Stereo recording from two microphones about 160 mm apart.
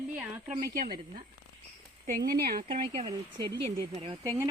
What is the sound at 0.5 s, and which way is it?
Speech, 25° right (ahead or behind).